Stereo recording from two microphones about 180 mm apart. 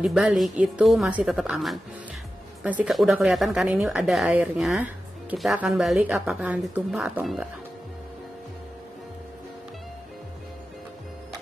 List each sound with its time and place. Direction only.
0.0 s speech: centre (ahead or behind)
5.9 s a woman's voice: 15° right (ahead or behind)
6.2 s speech: 5° right (ahead or behind)